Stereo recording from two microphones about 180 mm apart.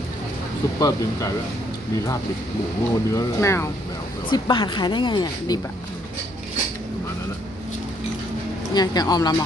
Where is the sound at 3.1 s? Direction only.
15° left (ahead or behind).